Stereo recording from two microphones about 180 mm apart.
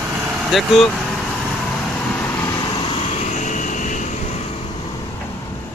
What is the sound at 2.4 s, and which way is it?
Vehicle, 25° left (ahead or behind).